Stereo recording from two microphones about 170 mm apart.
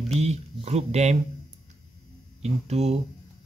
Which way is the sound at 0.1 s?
40° right (ahead or behind).